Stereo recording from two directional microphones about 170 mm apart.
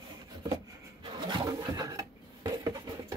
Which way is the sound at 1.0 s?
25° right (ahead or behind).